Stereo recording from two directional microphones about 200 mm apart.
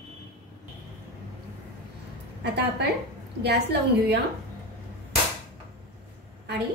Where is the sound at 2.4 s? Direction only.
55° right (ahead or behind).